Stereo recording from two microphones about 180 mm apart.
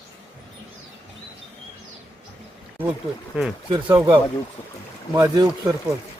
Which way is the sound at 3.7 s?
25° right (ahead or behind).